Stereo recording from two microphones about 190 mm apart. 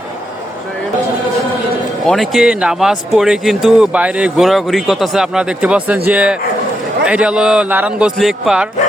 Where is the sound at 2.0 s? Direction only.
Centre (ahead or behind).